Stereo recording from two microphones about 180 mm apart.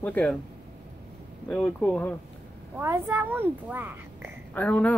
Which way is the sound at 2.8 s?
15° right (ahead or behind).